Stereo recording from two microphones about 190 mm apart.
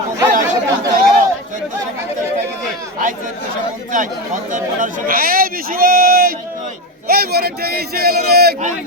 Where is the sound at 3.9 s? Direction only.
45° right (ahead or behind).